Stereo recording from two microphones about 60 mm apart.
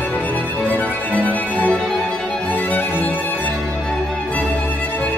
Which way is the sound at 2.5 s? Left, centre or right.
Left.